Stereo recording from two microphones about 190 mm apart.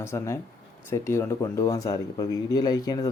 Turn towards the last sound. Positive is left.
turn(degrees=20)  # may be behind; listen again after turning